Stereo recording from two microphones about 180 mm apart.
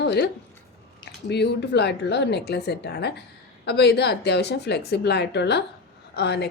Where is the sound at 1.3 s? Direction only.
70° left (ahead or behind).